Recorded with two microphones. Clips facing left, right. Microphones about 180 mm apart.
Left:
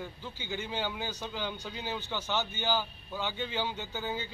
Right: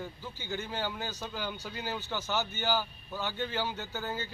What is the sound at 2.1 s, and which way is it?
A man's voice, 10° right (ahead or behind).